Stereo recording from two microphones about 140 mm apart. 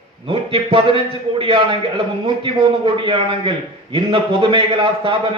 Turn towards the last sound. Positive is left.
turn(degrees=-40)  # may be behind; listen again after turning